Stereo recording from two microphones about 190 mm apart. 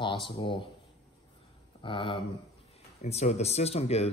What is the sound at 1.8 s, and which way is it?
Speech, 25° left (ahead or behind).